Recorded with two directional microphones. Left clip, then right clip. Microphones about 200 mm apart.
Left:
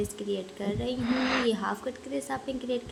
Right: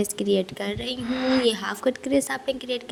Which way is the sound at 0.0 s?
45° right (ahead or behind).